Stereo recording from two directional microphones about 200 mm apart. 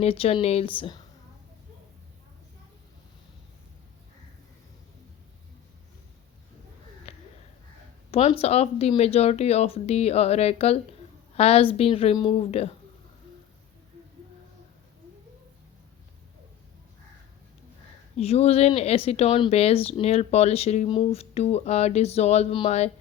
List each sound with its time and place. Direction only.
0.0 s speech: 30° left (ahead or behind)
7.1 s a sound: 30° left (ahead or behind)
8.1 s speech: 30° left (ahead or behind)
18.2 s speech: 30° left (ahead or behind)